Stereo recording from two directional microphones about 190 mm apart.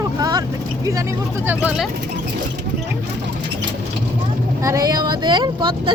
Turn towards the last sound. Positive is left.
turn(degrees=-25)  # may be behind; listen again after turning